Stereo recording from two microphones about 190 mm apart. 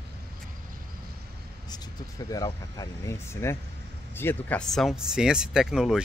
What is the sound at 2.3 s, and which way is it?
Speech, 20° left (ahead or behind).